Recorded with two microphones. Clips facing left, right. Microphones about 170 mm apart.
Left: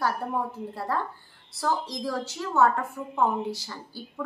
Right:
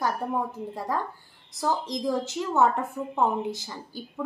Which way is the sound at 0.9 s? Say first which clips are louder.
Even; 15° right (ahead or behind).